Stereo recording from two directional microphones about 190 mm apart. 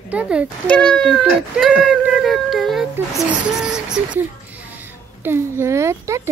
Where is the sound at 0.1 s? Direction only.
5° right (ahead or behind).